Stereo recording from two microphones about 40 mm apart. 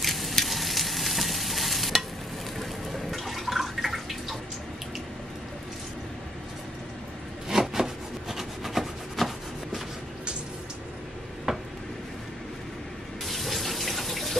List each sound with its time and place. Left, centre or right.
0.0 s frying: centre
3.1 s water: centre
7.6 s rub: centre
11.5 s a sound: centre
13.2 s water tap: centre